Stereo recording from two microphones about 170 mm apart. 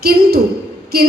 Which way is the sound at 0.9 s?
65° right (ahead or behind).